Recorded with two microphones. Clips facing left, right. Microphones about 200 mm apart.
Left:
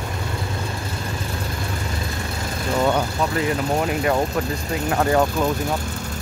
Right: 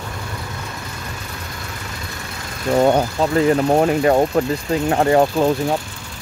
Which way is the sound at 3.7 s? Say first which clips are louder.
Right 6 dB; 35° right (ahead or behind).